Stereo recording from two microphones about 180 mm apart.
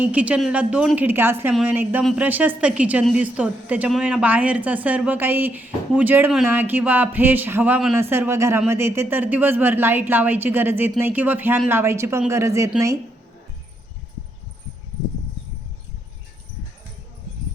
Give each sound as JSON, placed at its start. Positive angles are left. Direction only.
{"t": 0.0, "sound": "a woman's voice", "side_deg": -10}